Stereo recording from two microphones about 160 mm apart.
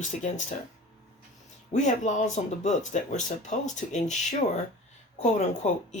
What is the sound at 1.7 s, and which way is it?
Speech, 50° left (ahead or behind).